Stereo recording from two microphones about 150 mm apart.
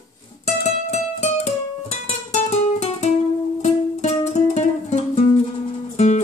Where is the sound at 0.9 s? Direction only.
45° left (ahead or behind).